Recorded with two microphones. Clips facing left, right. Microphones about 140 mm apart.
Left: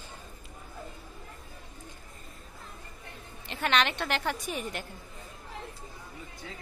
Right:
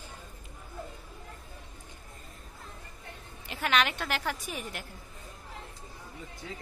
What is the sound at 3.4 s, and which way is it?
A woman's voice, 5° right (ahead or behind).